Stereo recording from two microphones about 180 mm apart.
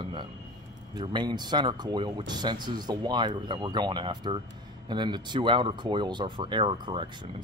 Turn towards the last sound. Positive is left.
turn(degrees=-25)  # may be behind; listen again after turning